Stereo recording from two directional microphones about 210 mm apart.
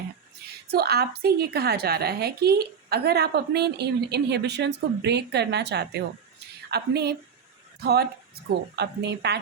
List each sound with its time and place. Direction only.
0.7 s a woman's voice: 50° right (ahead or behind)